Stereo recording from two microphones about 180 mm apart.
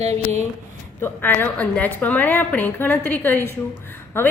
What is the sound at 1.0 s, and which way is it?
A woman's voice, 10° left (ahead or behind).